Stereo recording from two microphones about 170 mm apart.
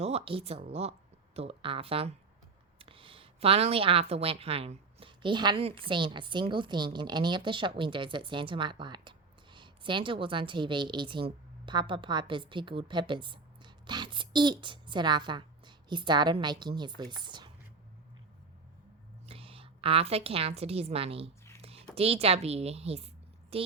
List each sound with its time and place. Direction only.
0.0 s speech: 35° right (ahead or behind)
19.2 s a woman's voice: 35° right (ahead or behind)